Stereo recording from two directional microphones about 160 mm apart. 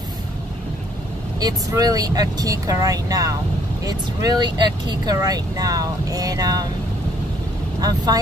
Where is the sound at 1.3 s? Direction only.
25° right (ahead or behind).